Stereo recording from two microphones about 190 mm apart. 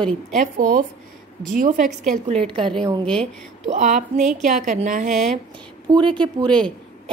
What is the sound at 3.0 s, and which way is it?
Speech, 5° left (ahead or behind).